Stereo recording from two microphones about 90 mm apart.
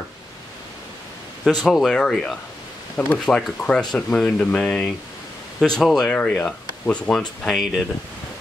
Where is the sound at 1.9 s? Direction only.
10° left (ahead or behind).